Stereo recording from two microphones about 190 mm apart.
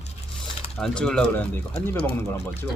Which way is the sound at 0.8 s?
5° left (ahead or behind).